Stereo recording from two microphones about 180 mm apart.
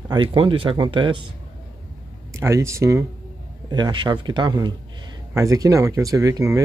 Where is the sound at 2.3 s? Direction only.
15° right (ahead or behind).